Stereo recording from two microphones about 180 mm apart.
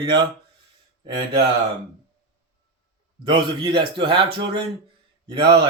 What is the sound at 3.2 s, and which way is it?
Speech, 25° right (ahead or behind).